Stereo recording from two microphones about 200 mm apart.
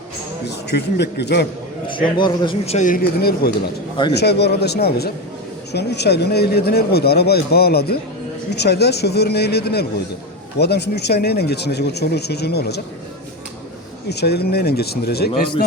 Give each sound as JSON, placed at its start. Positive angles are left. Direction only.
{"t": 0.4, "sound": "speech", "side_deg": 55}
{"t": 1.9, "sound": "a man's voice", "side_deg": 25}
{"t": 14.1, "sound": "speech", "side_deg": 55}